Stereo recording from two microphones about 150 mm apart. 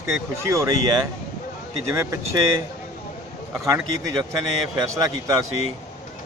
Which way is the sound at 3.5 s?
20° right (ahead or behind).